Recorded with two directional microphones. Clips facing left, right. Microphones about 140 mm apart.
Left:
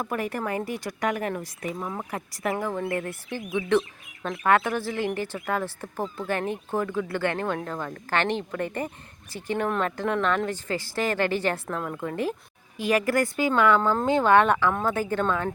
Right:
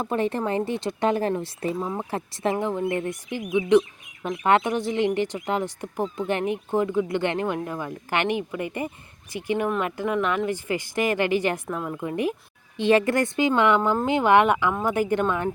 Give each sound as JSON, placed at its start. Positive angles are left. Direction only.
{"t": 0.0, "sound": "speech", "side_deg": -25}